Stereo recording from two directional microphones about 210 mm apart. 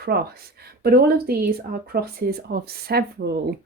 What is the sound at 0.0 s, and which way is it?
Speech, 50° right (ahead or behind).